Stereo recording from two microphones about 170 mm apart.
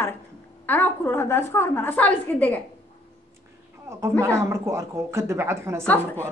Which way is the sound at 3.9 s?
15° right (ahead or behind).